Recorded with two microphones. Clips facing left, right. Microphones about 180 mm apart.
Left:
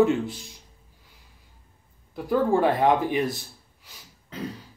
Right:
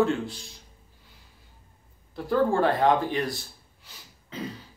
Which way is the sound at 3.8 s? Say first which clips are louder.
Even; 5° left (ahead or behind).